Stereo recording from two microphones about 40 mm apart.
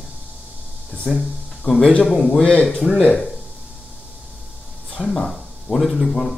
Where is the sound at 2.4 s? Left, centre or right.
Left.